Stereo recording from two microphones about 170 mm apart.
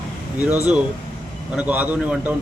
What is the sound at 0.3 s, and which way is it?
Speech, 10° right (ahead or behind).